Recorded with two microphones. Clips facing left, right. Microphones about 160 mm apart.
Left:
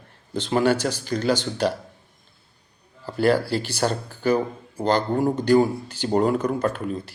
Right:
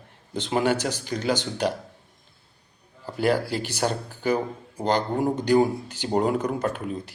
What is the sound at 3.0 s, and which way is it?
Speech, 15° right (ahead or behind).